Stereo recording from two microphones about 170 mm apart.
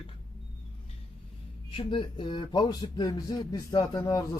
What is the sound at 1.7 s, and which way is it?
Speech, 30° left (ahead or behind).